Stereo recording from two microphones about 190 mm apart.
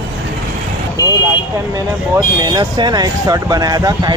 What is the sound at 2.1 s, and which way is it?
Speech, 20° right (ahead or behind).